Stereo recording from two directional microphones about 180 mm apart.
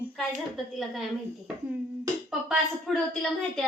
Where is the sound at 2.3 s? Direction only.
Centre (ahead or behind).